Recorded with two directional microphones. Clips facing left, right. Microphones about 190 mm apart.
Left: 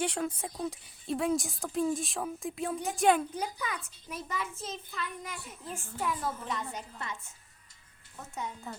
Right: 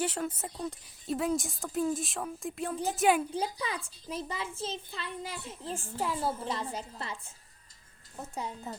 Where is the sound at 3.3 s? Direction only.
30° right (ahead or behind).